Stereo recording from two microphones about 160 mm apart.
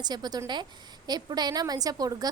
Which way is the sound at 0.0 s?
25° right (ahead or behind).